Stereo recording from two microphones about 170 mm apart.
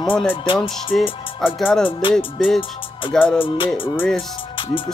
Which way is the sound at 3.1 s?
5° left (ahead or behind).